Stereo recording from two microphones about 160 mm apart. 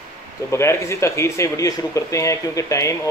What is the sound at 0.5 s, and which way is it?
Speech, 15° left (ahead or behind).